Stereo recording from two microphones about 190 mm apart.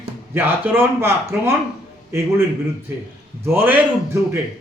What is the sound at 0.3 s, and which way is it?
Speech, 10° right (ahead or behind).